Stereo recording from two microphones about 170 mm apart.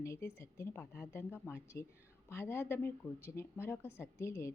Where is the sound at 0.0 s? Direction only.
15° left (ahead or behind).